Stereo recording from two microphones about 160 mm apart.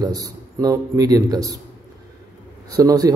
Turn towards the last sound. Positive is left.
turn(degrees=-20)  # may be behind; listen again after turning